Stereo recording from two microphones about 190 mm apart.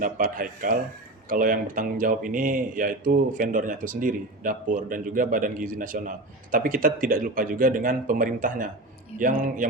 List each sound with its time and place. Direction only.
0.0 s speech: 45° right (ahead or behind)